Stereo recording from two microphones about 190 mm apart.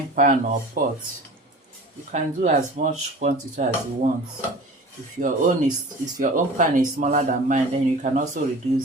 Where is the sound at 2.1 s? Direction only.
40° right (ahead or behind).